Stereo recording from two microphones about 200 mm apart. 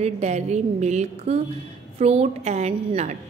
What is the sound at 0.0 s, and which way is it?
A woman's voice, 35° right (ahead or behind).